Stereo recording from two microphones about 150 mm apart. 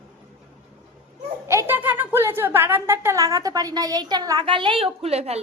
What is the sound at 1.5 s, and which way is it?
A woman's voice, 15° right (ahead or behind).